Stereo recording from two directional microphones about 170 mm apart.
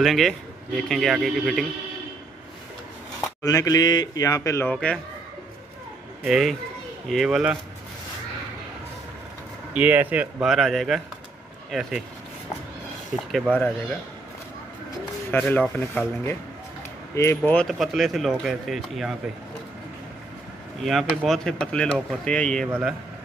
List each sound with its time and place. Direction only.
0.0 s speech: centre (ahead or behind)
3.4 s speech: 20° left (ahead or behind)
4.7 s speech: 5° left (ahead or behind)
6.2 s speech: centre (ahead or behind)
9.8 s speech: 10° right (ahead or behind)
13.1 s speech: 5° right (ahead or behind)
15.3 s speech: 10° left (ahead or behind)
17.5 s speech: 5° left (ahead or behind)
20.8 s speech: centre (ahead or behind)
22.7 s a man's voice: 10° right (ahead or behind)